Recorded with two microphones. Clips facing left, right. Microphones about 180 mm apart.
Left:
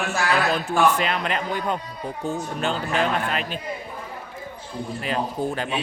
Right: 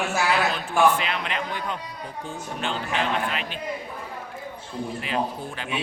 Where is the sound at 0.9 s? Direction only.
40° left (ahead or behind).